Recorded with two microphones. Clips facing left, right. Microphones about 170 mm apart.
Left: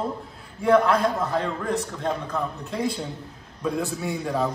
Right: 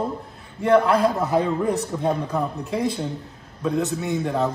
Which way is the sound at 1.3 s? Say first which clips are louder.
Right 5 dB; 15° right (ahead or behind).